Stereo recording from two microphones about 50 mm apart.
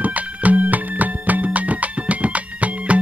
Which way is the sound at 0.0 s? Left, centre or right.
Right.